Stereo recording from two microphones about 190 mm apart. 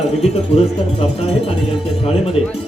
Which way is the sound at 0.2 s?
35° left (ahead or behind).